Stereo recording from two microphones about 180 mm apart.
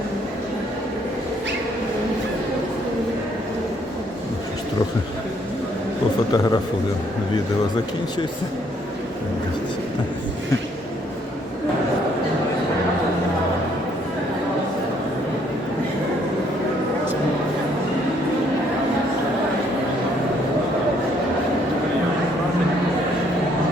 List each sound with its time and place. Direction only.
6.3 s a man's voice: 20° left (ahead or behind)